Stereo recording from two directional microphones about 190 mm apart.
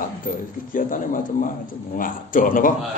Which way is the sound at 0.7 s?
45° left (ahead or behind).